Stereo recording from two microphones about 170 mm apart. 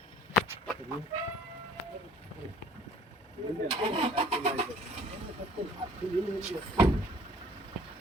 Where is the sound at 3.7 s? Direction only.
30° right (ahead or behind).